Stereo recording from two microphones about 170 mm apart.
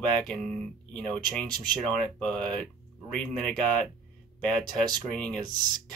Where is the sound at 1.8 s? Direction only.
5° left (ahead or behind).